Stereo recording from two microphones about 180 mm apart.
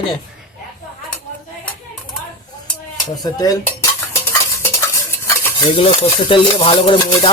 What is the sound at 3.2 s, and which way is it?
Stir, 20° left (ahead or behind).